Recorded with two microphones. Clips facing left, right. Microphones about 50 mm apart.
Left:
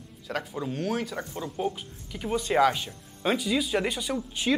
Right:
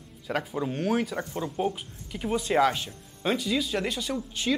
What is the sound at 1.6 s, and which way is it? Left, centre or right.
Speech, centre.